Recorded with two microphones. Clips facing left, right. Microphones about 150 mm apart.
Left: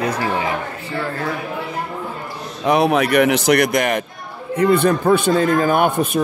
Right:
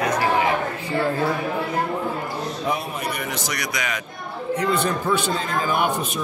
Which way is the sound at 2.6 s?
80° left.